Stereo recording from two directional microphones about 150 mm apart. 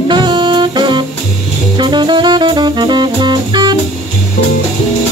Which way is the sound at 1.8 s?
30° right (ahead or behind).